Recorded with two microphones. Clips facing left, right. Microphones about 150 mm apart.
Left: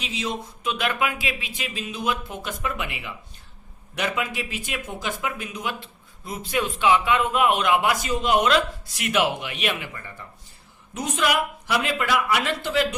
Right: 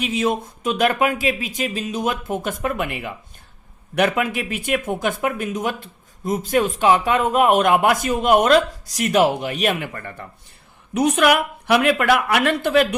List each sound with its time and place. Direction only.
0.0 s speech: 50° right (ahead or behind)